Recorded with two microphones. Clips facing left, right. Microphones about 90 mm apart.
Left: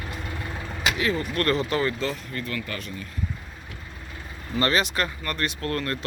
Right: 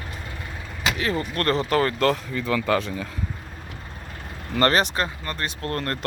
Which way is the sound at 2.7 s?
90° right.